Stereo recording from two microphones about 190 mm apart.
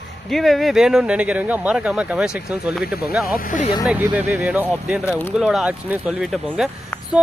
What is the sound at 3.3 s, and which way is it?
Speech, 45° left (ahead or behind).